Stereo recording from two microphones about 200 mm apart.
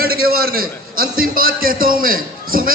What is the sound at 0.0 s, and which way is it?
A man's voice, 50° right (ahead or behind).